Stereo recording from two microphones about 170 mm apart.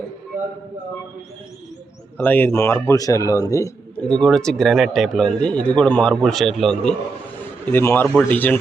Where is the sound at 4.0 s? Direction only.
5° left (ahead or behind).